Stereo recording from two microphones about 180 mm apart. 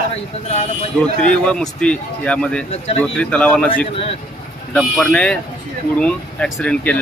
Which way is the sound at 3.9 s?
30° left (ahead or behind).